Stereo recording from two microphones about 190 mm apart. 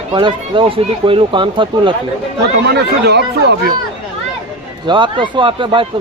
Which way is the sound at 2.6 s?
60° right (ahead or behind).